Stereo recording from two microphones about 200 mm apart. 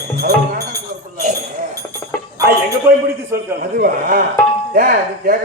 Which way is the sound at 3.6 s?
45° right (ahead or behind).